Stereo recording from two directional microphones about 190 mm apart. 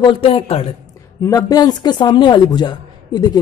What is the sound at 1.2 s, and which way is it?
Speech, 20° left (ahead or behind).